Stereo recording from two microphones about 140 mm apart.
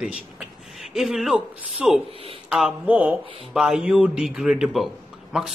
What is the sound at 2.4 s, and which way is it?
Speech, 5° right (ahead or behind).